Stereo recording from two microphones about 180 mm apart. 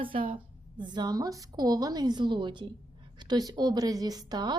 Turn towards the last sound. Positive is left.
turn(degrees=-20)  # may be behind; listen again after turning